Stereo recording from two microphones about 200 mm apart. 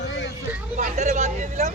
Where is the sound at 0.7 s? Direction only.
35° right (ahead or behind).